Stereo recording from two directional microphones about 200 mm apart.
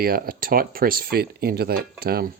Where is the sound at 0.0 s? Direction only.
45° right (ahead or behind).